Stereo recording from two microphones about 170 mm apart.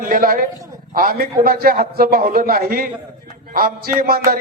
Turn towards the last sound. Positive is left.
turn(degrees=-60)  # may be behind; listen again after turning